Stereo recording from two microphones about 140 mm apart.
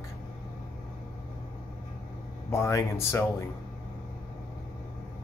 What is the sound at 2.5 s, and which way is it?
Speech, 20° left (ahead or behind).